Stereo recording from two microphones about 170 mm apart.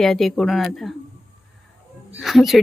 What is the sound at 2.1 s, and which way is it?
Music, centre (ahead or behind).